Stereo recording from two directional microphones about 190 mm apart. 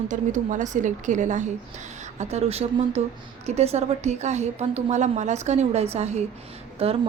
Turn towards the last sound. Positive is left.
turn(degrees=-30)  # may be behind; listen again after turning